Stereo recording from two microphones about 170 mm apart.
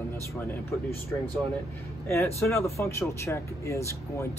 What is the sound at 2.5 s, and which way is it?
Speech, 15° left (ahead or behind).